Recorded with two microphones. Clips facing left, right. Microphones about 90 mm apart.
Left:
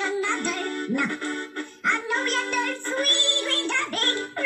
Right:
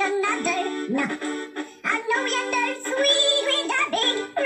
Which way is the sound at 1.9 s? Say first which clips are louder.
Right 2 dB; 40° right (ahead or behind).